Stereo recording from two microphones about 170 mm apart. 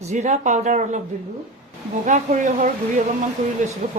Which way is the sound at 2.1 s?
45° right (ahead or behind).